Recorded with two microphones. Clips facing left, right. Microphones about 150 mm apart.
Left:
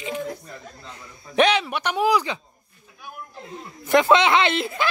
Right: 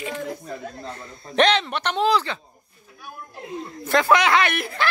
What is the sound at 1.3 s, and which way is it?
A man's voice, 10° left (ahead or behind).